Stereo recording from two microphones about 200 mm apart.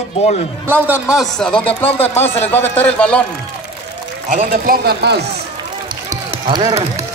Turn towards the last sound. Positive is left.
turn(degrees=-20)  # may be behind; listen again after turning